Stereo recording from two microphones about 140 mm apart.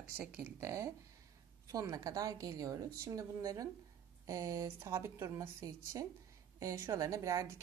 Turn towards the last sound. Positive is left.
turn(degrees=-20)  # may be behind; listen again after turning